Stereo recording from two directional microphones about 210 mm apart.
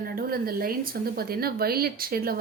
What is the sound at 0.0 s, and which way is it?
A woman's voice, 45° right (ahead or behind).